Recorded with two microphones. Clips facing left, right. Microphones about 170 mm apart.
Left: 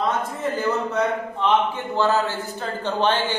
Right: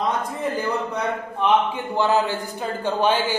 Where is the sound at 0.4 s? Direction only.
10° right (ahead or behind).